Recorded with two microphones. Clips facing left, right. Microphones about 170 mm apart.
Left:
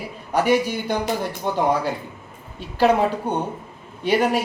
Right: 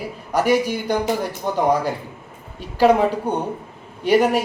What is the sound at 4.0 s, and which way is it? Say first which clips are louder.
Speech: right 4 dB; 10° right (ahead or behind).